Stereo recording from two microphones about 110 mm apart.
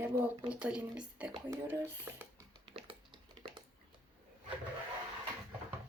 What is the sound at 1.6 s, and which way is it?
Speech, 20° right (ahead or behind).